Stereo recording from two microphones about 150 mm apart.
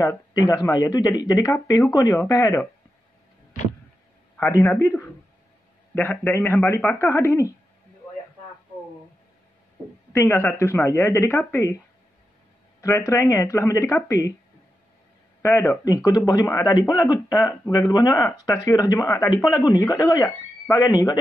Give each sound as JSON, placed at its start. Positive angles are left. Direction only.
{"t": 0.0, "sound": "speech", "side_deg": 25}
{"t": 4.5, "sound": "speech", "side_deg": 20}
{"t": 10.1, "sound": "speech", "side_deg": 15}
{"t": 12.8, "sound": "speech", "side_deg": 20}
{"t": 15.4, "sound": "speech", "side_deg": 15}